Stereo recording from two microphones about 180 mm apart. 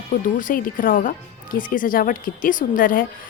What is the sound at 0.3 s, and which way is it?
A woman's voice, 50° left (ahead or behind).